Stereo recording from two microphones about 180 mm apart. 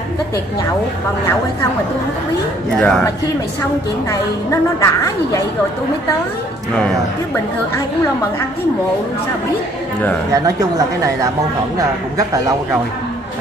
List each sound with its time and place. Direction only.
2.8 s a woman's voice: 5° left (ahead or behind)
4.1 s a woman's voice: 15° left (ahead or behind)
10.3 s speech: 20° right (ahead or behind)